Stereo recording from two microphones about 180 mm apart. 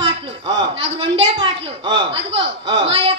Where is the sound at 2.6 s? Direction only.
30° right (ahead or behind).